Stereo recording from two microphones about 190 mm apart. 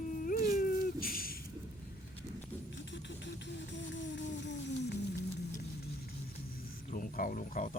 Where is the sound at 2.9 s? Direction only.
70° left (ahead or behind).